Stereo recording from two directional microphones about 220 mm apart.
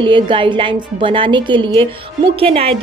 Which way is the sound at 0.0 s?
20° right (ahead or behind).